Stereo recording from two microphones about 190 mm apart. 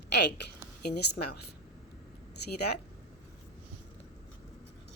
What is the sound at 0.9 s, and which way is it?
Speech, 60° left (ahead or behind).